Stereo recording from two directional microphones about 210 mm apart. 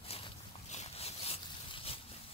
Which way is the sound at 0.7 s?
30° left (ahead or behind).